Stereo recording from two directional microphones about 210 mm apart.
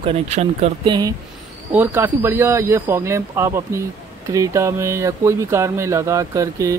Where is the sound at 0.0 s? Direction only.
30° right (ahead or behind).